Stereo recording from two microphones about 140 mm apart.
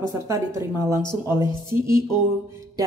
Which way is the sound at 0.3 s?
20° right (ahead or behind).